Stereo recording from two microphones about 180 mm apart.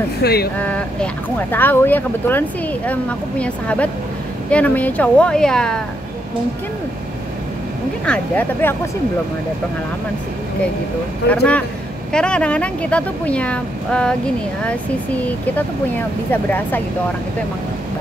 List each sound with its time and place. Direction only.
0.2 s speech: 60° left (ahead or behind)
0.6 s speech: 5° left (ahead or behind)
8.0 s speech: 10° left (ahead or behind)
11.2 s speech: 10° left (ahead or behind)
16.3 s speech: 10° left (ahead or behind)